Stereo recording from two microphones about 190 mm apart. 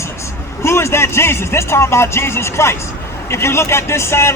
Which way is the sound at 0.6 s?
15° left (ahead or behind).